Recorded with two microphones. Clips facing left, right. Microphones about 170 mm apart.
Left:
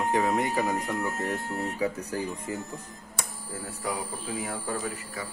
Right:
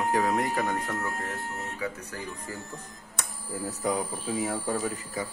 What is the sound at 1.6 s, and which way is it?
Speech, 35° left (ahead or behind).